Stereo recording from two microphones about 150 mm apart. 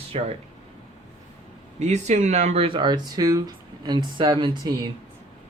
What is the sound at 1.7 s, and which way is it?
Speech, 50° right (ahead or behind).